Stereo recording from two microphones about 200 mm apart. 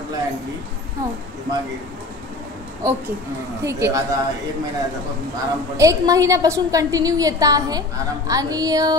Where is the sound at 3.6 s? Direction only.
15° right (ahead or behind).